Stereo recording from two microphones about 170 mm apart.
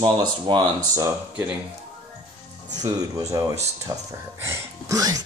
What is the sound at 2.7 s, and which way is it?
Speech, 20° right (ahead or behind).